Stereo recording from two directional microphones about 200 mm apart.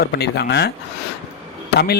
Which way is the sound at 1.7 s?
50° left (ahead or behind).